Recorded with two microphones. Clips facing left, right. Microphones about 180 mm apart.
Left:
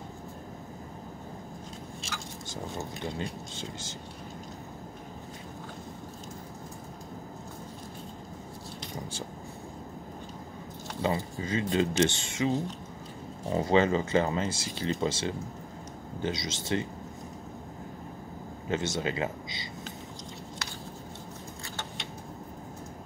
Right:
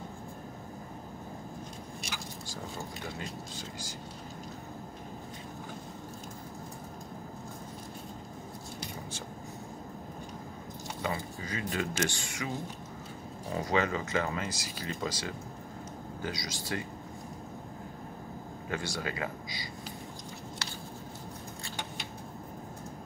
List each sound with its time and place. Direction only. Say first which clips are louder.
2.5 s speech: left 5 dB; 25° left (ahead or behind)
11.0 s speech: left 6 dB; 25° left (ahead or behind)
18.7 s speech: left 6 dB; 20° left (ahead or behind)